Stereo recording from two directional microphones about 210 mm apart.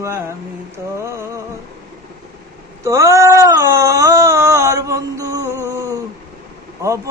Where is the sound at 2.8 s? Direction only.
15° right (ahead or behind).